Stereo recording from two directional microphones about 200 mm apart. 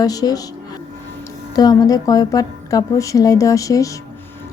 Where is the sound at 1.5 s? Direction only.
20° left (ahead or behind).